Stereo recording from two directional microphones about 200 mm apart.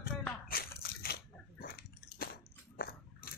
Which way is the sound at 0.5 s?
50° left (ahead or behind).